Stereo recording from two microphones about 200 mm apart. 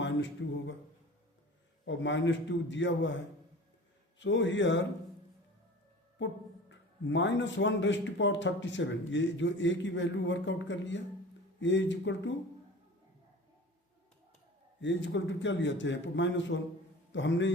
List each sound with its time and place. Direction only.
0.4 s speech: 65° left (ahead or behind)
1.8 s speech: 65° left (ahead or behind)
4.2 s speech: 65° left (ahead or behind)
6.7 s speech: 65° left (ahead or behind)
14.8 s a man's voice: 65° left (ahead or behind)